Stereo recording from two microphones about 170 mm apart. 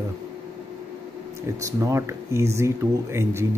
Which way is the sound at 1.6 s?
20° right (ahead or behind).